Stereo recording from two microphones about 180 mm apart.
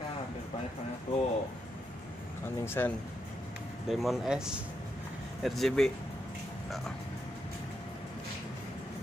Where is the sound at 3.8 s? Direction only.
Centre (ahead or behind).